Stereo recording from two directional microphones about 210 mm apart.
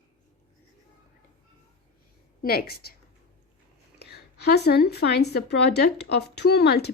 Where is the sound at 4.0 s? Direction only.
50° left (ahead or behind).